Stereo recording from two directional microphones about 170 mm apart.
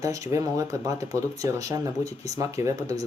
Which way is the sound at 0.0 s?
20° right (ahead or behind).